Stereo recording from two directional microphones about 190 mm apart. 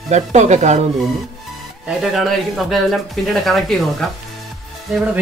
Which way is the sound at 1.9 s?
Centre (ahead or behind).